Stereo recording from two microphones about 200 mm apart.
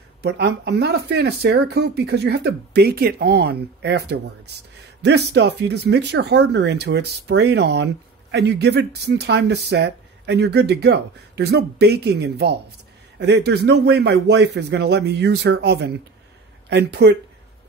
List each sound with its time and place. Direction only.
0.2 s speech: 55° right (ahead or behind)